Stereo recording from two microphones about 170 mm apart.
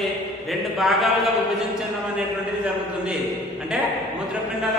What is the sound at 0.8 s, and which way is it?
Speech, centre (ahead or behind).